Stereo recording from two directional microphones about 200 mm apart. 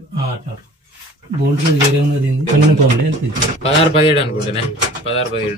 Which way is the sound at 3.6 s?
30° left (ahead or behind).